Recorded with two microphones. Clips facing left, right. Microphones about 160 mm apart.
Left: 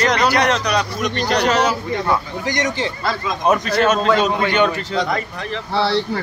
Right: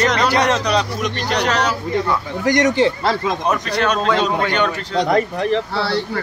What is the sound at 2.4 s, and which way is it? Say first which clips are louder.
Speech: right 8 dB; 60° right (ahead or behind).